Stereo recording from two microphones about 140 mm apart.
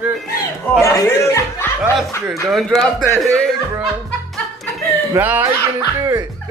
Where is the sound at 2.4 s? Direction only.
Centre (ahead or behind).